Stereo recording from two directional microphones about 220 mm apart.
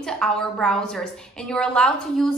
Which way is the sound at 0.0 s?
5° left (ahead or behind).